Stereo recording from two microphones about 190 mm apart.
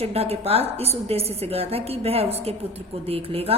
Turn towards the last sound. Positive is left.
turn(degrees=-30)  # may be behind; listen again after turning